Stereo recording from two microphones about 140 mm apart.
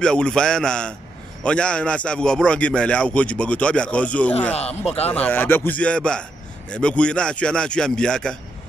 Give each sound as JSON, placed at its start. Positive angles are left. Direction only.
{"t": 0.0, "sound": "a man's voice", "side_deg": 5}
{"t": 4.6, "sound": "speech", "side_deg": 45}
{"t": 5.1, "sound": "a man's voice", "side_deg": 10}